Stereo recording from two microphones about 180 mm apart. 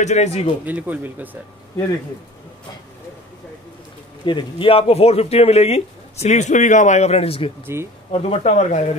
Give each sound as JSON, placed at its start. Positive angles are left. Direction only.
{"t": 0.0, "sound": "speech", "side_deg": 40}
{"t": 0.7, "sound": "speech", "side_deg": -10}
{"t": 4.3, "sound": "speech", "side_deg": 25}
{"t": 7.6, "sound": "speech", "side_deg": -15}
{"t": 8.1, "sound": "speech", "side_deg": 40}